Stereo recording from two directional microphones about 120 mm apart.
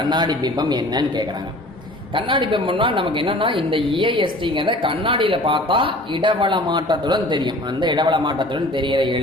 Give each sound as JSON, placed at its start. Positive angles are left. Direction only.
{"t": 0.0, "sound": "a man's voice", "side_deg": -35}